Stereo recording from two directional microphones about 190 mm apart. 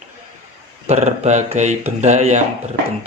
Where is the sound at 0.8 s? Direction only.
35° right (ahead or behind).